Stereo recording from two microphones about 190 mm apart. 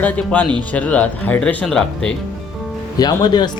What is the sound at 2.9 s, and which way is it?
Speech, 20° left (ahead or behind).